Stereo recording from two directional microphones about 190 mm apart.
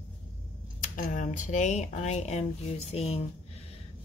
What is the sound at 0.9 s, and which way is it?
Speech, 40° left (ahead or behind).